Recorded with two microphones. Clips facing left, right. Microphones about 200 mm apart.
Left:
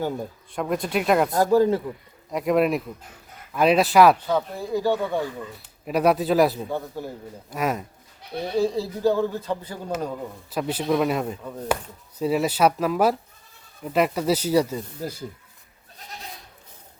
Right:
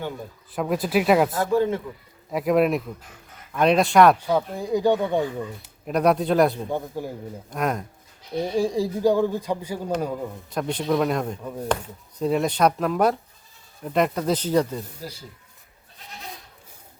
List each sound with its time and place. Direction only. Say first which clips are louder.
0.5 s speech: right 2 dB; 5° right (ahead or behind)
1.3 s speech: left 3 dB; 40° left (ahead or behind)
2.3 s speech: right 1 dB; centre (ahead or behind)
4.3 s a man's voice: right 2 dB; 15° right (ahead or behind)
5.8 s speech: even; 5° left (ahead or behind)
6.7 s a man's voice: right 1 dB; 15° right (ahead or behind)
7.5 s speech: even; 5° left (ahead or behind)
8.5 s a man's voice: left 1 dB; 10° right (ahead or behind)
10.5 s speech: left 1 dB; 5° left (ahead or behind)
11.4 s a man's voice: right 2 dB; 10° right (ahead or behind)
12.2 s speech: even; 5° left (ahead or behind)